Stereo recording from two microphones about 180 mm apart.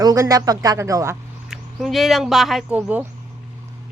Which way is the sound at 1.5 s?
Centre (ahead or behind).